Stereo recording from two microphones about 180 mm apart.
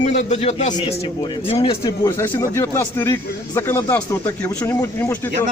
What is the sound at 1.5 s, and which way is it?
Speech, 20° left (ahead or behind).